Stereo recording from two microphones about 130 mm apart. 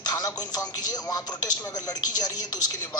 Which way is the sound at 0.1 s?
30° left (ahead or behind).